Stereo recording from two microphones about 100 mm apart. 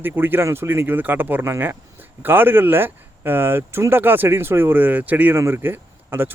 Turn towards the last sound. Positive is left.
turn(degrees=-20)  # may be behind; listen again after turning